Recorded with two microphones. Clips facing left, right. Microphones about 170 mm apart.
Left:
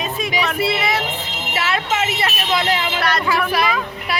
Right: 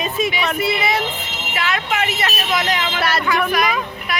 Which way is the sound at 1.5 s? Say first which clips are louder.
Left 1 dB; 30° left (ahead or behind).